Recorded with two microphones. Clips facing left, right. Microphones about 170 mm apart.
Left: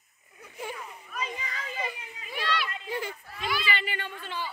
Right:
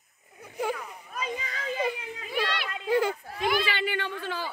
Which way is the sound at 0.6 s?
75° right (ahead or behind).